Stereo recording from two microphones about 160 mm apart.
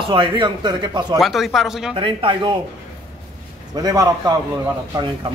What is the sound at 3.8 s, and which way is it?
Speech, 25° right (ahead or behind).